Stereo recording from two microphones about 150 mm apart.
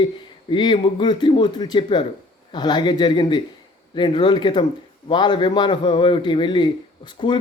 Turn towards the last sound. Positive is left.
turn(degrees=30)  # may be behind; listen again after turning